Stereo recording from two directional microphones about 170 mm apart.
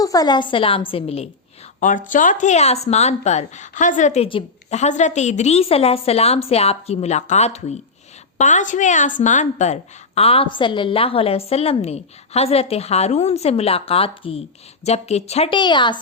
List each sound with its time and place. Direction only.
0.0 s speech: 20° left (ahead or behind)
1.8 s a woman's voice: 50° left (ahead or behind); by 16.0 s 25° left (ahead or behind)